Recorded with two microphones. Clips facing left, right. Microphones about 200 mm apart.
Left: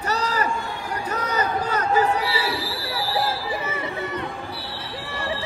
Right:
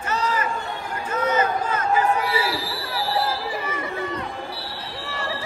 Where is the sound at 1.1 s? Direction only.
35° left (ahead or behind).